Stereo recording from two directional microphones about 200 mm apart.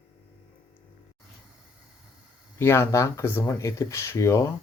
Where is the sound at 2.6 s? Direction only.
15° left (ahead or behind).